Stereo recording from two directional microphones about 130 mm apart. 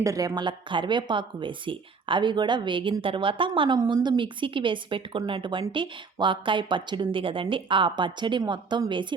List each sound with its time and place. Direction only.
0.0 s a woman's voice: 25° right (ahead or behind)